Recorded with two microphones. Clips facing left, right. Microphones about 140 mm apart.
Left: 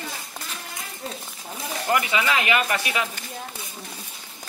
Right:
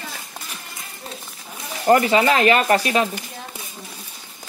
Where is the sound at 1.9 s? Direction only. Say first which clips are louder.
Right 8 dB; 40° right (ahead or behind).